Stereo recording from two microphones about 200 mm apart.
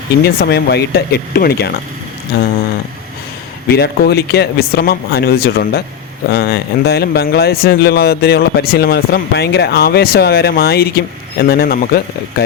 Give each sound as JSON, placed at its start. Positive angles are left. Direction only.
{"t": 0.2, "sound": "speech", "side_deg": 55}
{"t": 3.7, "sound": "speech", "side_deg": 55}